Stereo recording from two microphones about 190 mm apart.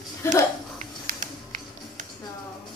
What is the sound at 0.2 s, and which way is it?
Speech, 15° left (ahead or behind).